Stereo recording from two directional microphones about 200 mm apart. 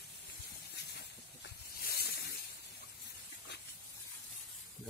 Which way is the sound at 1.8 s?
50° left (ahead or behind).